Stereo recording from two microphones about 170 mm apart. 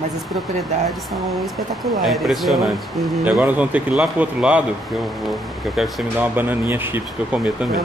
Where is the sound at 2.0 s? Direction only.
Centre (ahead or behind).